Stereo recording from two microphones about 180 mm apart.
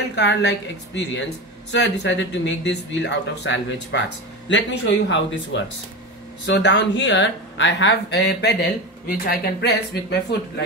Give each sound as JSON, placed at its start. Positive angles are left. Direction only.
{"t": 0.1, "sound": "speech", "side_deg": 75}